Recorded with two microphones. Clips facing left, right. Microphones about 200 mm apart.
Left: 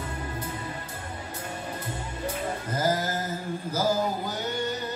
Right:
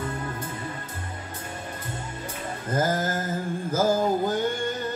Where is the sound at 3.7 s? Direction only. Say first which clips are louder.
Right 4 dB; 50° right (ahead or behind).